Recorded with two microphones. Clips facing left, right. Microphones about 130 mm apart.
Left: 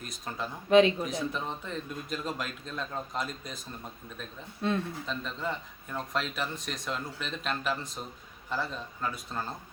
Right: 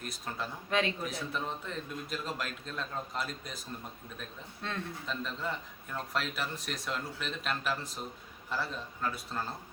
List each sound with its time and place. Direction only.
0.0 s speech: centre (ahead or behind)
0.7 s a man's voice: 20° left (ahead or behind)
1.1 s speech: 5° right (ahead or behind)
4.6 s a man's voice: 15° left (ahead or behind)
5.0 s speech: centre (ahead or behind)